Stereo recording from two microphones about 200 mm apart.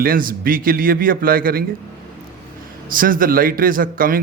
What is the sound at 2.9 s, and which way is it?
A man's voice, 45° right (ahead or behind).